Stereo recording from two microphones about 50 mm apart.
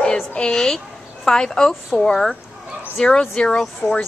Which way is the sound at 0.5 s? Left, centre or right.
Centre.